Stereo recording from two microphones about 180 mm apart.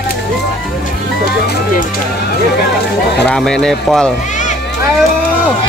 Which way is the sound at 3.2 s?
5° left (ahead or behind).